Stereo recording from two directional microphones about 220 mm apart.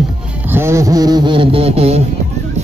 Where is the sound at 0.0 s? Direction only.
10° right (ahead or behind); by 2.0 s 25° right (ahead or behind).